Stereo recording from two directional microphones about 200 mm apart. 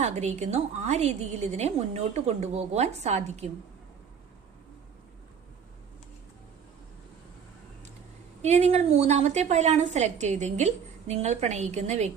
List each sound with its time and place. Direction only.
0.0 s a woman's voice: 35° right (ahead or behind)
8.4 s a woman's voice: 35° right (ahead or behind)